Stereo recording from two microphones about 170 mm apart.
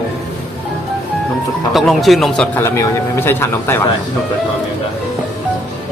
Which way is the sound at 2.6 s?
15° left (ahead or behind).